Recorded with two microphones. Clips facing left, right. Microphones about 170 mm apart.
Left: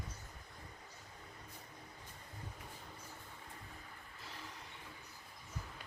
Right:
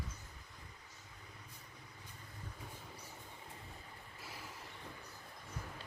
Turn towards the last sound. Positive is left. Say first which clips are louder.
# right 1 dB
turn(degrees=-10)  # may be behind; listen again after turning